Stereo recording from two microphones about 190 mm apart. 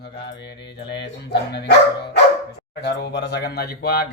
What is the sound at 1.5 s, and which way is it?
Speech, 60° left (ahead or behind).